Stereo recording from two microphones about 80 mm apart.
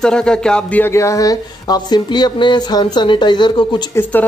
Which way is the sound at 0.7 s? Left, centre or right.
Left.